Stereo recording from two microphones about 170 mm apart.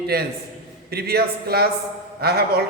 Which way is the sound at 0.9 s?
65° right (ahead or behind).